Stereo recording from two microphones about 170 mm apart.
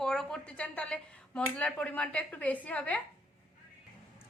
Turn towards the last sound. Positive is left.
turn(degrees=10)  # may be behind; listen again after turning